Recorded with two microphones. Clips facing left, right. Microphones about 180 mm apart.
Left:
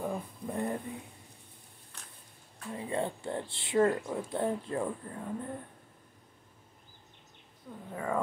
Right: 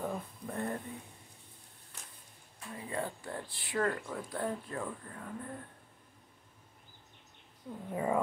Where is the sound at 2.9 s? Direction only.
25° left (ahead or behind).